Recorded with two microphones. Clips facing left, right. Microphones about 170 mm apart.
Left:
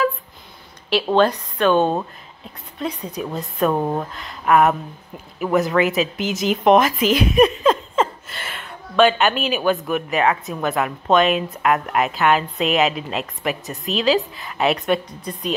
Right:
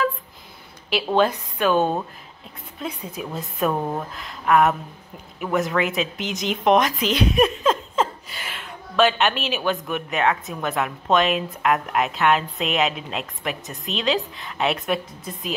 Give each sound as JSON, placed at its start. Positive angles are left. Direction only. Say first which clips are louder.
{"t": 1.1, "sound": "a woman's voice", "louder": "left 2 dB", "side_deg": -5}
{"t": 3.7, "sound": "speech", "louder": "left 4 dB", "side_deg": 20}
{"t": 4.1, "sound": "a woman's voice", "louder": "even", "side_deg": 0}